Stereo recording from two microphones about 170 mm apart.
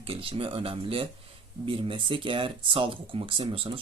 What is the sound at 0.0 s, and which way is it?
Speech, 35° right (ahead or behind).